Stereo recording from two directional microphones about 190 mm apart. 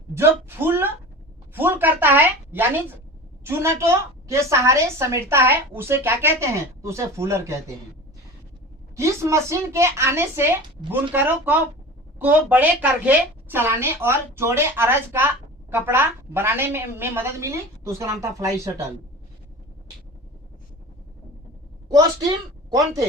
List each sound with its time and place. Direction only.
0.1 s a woman's voice: 10° right (ahead or behind)
1.5 s a sound: 10° right (ahead or behind)
3.4 s a woman's voice: 15° right (ahead or behind)
9.0 s a woman's voice: 15° right (ahead or behind)
22.7 s speech: 20° right (ahead or behind)